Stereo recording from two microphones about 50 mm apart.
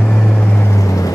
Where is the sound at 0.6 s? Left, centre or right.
Left.